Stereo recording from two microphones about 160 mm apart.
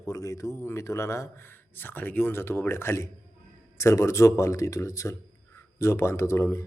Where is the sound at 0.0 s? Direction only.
20° left (ahead or behind).